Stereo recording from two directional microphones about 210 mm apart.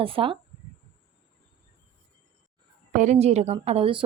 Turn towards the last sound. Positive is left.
turn(degrees=-25)  # may be behind; listen again after turning